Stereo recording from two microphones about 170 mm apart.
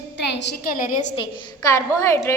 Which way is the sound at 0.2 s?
90° left.